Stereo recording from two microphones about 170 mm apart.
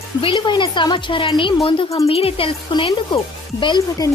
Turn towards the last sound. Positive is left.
turn(degrees=25)  # may be behind; listen again after turning